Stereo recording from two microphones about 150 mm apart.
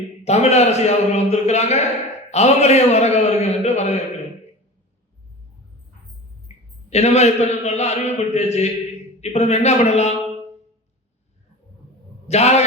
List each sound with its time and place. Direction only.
0.3 s a man's voice: 45° left (ahead or behind)
6.9 s a man's voice: 45° left (ahead or behind)
12.3 s a man's voice: 45° left (ahead or behind)